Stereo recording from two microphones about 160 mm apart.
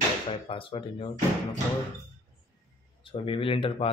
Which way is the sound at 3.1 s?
35° left (ahead or behind).